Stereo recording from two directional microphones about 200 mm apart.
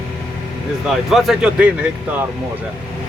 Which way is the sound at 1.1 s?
Centre (ahead or behind).